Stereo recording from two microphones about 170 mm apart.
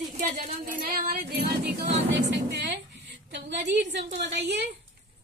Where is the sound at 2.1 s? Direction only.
85° right.